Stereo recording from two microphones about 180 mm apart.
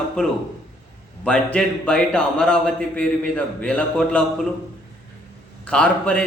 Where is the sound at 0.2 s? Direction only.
5° left (ahead or behind).